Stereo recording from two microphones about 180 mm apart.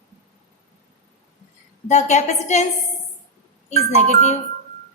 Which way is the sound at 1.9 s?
40° left (ahead or behind).